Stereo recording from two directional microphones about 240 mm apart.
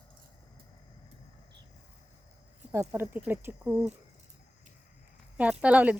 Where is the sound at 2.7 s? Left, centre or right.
Centre.